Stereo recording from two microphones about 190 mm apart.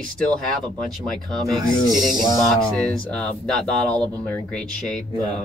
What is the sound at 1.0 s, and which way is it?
Speech, centre (ahead or behind).